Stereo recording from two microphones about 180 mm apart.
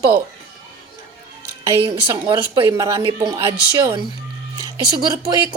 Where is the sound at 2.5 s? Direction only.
20° right (ahead or behind).